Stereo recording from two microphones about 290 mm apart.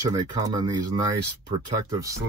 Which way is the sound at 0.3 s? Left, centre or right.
Centre.